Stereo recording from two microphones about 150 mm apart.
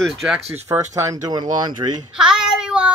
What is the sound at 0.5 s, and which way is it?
Speech, 20° right (ahead or behind).